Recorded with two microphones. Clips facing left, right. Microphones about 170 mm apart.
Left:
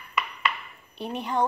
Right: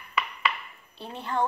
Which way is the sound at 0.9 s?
15° left (ahead or behind).